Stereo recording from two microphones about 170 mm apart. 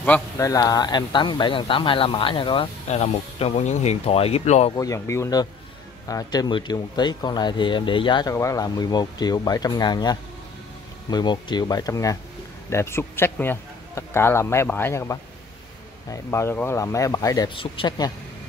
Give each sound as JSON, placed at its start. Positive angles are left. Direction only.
{"t": 0.4, "sound": "speech", "side_deg": 20}
{"t": 4.7, "sound": "a man's voice", "side_deg": 20}